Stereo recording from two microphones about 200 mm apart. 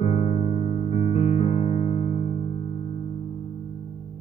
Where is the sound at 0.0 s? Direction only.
30° left (ahead or behind).